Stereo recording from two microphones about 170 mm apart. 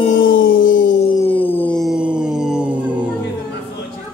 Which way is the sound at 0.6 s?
50° left (ahead or behind).